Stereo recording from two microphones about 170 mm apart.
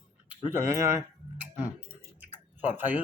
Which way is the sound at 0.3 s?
15° right (ahead or behind).